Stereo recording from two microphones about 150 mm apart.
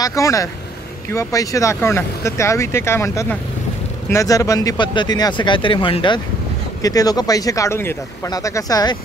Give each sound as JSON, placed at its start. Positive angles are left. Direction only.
{"t": 0.0, "sound": "speech", "side_deg": 20}
{"t": 6.8, "sound": "speech", "side_deg": 25}